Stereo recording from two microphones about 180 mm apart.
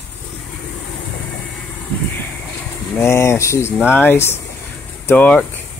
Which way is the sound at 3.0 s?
15° left (ahead or behind).